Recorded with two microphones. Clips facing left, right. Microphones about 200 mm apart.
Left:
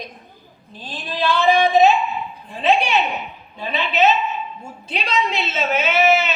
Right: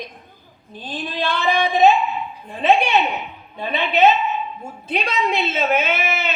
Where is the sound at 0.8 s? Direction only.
55° right (ahead or behind).